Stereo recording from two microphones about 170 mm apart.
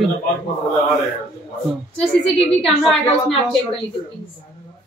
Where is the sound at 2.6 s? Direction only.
Centre (ahead or behind).